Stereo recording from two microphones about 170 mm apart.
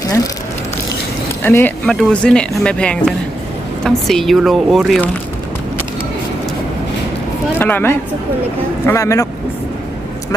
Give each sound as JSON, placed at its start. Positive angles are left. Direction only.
{"t": 1.5, "sound": "speech", "side_deg": 10}
{"t": 7.6, "sound": "speech", "side_deg": 10}